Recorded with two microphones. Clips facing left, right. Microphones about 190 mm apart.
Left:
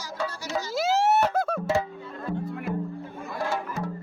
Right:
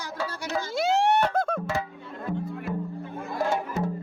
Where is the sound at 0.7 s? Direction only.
Centre (ahead or behind).